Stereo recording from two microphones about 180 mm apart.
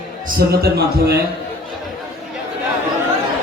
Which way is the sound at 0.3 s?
60° right (ahead or behind).